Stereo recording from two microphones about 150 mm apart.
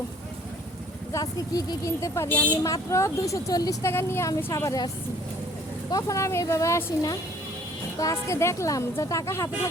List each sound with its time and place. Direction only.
1.1 s speech: 25° left (ahead or behind)
5.9 s speech: 20° left (ahead or behind)